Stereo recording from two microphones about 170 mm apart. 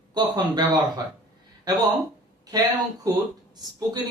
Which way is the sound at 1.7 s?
25° right (ahead or behind).